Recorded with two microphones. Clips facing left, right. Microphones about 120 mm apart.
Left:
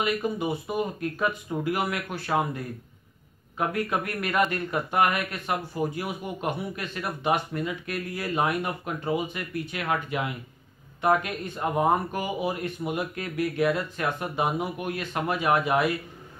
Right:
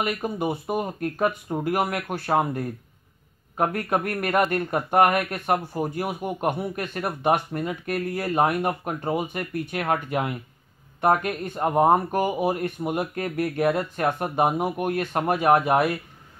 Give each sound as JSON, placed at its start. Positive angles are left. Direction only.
{"t": 0.0, "sound": "speech", "side_deg": -50}